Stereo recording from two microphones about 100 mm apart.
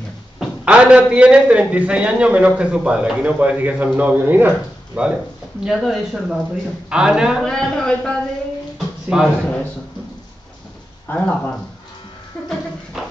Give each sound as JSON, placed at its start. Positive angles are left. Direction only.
{"t": 0.4, "sound": "a man's voice", "side_deg": -10}
{"t": 7.4, "sound": "a man's voice", "side_deg": 5}
{"t": 8.7, "sound": "a sound", "side_deg": -5}
{"t": 11.1, "sound": "a man's voice", "side_deg": 15}
{"t": 12.4, "sound": "a sound", "side_deg": 5}
{"t": 13.0, "sound": "music", "side_deg": -5}